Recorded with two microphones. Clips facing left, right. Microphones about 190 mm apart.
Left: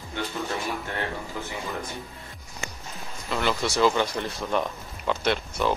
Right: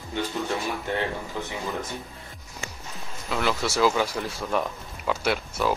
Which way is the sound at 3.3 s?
Centre (ahead or behind).